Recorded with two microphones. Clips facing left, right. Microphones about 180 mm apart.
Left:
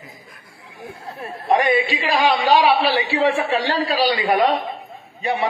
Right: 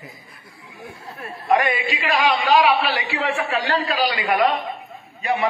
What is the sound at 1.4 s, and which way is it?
A man's voice, 30° left (ahead or behind).